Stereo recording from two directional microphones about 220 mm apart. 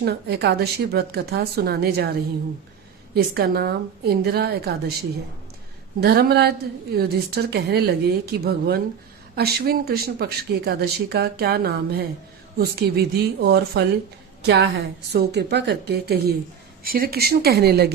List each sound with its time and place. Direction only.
0.0 s speech: 45° right (ahead or behind)
3.2 s speech: 45° right (ahead or behind)
6.0 s speech: 45° right (ahead or behind)